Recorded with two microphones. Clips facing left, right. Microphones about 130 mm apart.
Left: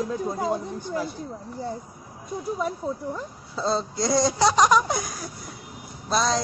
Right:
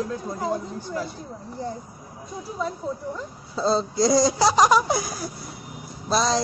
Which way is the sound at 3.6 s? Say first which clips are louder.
Right 4 dB; centre (ahead or behind).